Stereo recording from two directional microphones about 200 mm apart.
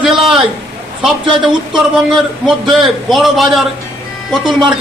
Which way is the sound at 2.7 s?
Centre (ahead or behind).